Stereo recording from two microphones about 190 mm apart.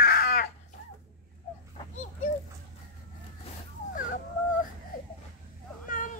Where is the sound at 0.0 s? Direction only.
50° left (ahead or behind).